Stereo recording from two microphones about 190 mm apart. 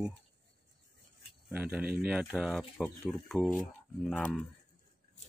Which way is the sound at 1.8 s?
55° right (ahead or behind).